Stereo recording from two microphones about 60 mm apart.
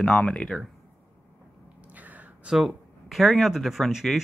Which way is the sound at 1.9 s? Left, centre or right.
Right.